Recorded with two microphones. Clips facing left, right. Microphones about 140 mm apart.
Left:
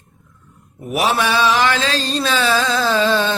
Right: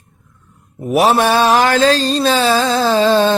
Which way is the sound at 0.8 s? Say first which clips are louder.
Right 6 dB; 30° right (ahead or behind).